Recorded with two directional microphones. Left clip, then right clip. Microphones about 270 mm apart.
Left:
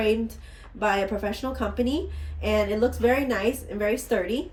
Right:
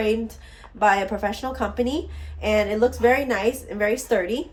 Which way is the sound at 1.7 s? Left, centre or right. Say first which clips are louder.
Right 2 dB; centre.